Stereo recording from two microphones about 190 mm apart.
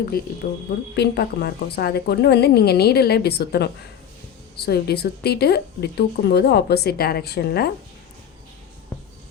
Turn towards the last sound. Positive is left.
turn(degrees=55)  # may be behind; listen again after turning